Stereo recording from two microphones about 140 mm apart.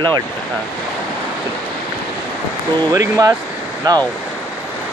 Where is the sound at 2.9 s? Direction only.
25° right (ahead or behind).